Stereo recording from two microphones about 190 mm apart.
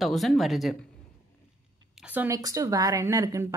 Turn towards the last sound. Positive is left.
turn(degrees=-15)  # may be behind; listen again after turning